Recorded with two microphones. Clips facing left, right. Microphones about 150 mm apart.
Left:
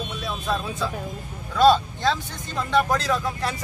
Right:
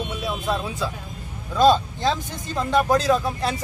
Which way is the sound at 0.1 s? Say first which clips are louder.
Right 2 dB; 10° right (ahead or behind).